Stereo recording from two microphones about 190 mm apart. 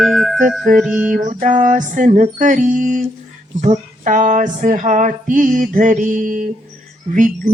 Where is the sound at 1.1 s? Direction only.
40° right (ahead or behind).